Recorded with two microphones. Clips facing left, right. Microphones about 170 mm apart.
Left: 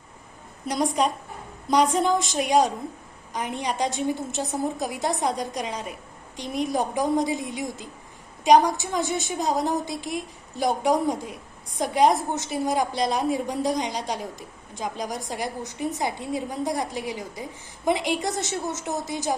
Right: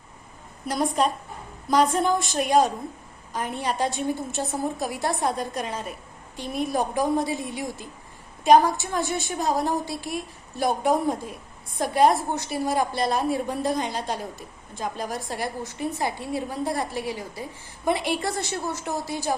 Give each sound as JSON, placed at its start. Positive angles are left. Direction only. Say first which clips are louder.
{"t": 0.7, "sound": "a woman's voice", "louder": "even", "side_deg": 15}